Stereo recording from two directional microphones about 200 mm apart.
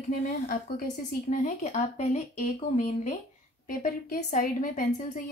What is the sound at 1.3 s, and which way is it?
A woman's voice, 40° left (ahead or behind).